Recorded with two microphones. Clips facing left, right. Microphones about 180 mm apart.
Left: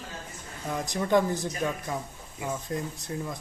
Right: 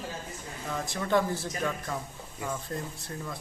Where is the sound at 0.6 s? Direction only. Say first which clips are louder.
Left 3 dB; 15° left (ahead or behind).